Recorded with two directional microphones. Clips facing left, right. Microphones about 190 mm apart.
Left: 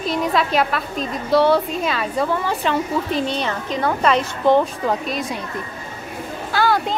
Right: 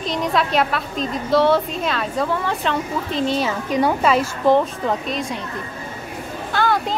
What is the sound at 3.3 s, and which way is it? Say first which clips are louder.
A woman's voice: right 3 dB; 10° right (ahead or behind).